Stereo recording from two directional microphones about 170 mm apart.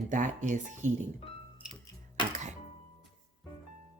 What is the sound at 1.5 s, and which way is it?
Music, 5° right (ahead or behind).